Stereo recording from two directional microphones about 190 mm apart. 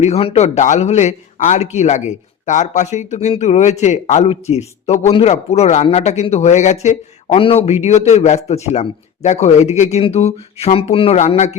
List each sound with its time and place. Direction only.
0.0 s speech: 35° left (ahead or behind)